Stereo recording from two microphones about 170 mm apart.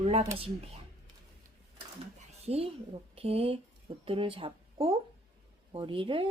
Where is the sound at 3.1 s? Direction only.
35° right (ahead or behind).